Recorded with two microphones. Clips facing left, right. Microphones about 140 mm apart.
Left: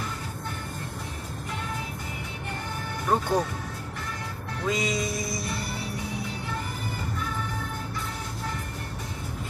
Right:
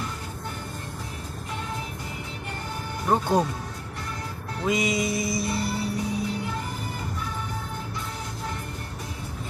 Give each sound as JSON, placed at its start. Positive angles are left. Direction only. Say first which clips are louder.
{"t": 3.1, "sound": "speech", "louder": "right 2 dB", "side_deg": -20}
{"t": 4.6, "sound": "music", "louder": "right 3 dB", "side_deg": -15}